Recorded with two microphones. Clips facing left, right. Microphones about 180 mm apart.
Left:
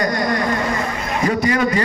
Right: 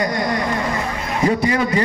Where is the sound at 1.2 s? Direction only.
30° right (ahead or behind).